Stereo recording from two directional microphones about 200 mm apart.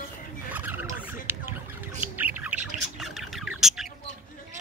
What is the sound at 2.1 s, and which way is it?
Bird, 10° right (ahead or behind).